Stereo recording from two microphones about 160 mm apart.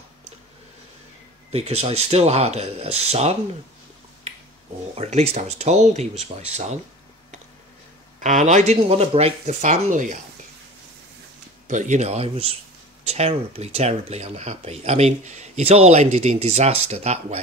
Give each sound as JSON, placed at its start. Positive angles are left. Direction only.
{"t": 1.5, "sound": "speech", "side_deg": -40}
{"t": 4.9, "sound": "speech", "side_deg": -40}
{"t": 8.2, "sound": "speech", "side_deg": -50}
{"t": 11.6, "sound": "speech", "side_deg": -50}